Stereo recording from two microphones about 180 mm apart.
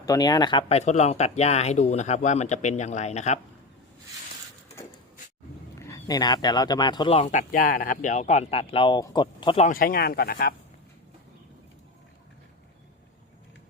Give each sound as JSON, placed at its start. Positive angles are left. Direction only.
{"t": 0.0, "sound": "speech", "side_deg": 20}
{"t": 5.7, "sound": "speech", "side_deg": 15}
{"t": 9.6, "sound": "speech", "side_deg": 55}